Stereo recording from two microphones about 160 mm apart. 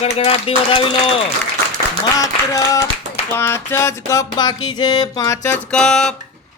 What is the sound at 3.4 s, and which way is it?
Music, 15° left (ahead or behind).